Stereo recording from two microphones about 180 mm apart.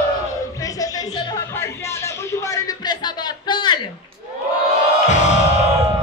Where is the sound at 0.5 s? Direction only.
20° left (ahead or behind).